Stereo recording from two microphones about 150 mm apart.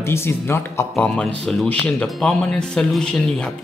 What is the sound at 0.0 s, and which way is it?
Speech, 15° left (ahead or behind).